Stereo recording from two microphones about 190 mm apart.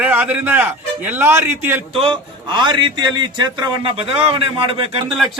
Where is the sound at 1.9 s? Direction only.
25° right (ahead or behind).